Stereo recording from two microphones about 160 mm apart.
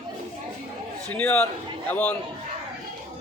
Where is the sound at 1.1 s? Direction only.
10° left (ahead or behind).